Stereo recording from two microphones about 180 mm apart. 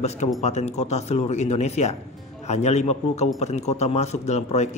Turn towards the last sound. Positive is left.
turn(degrees=40)  # may be behind; listen again after turning